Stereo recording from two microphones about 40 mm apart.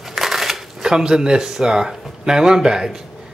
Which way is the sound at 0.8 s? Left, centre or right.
Centre.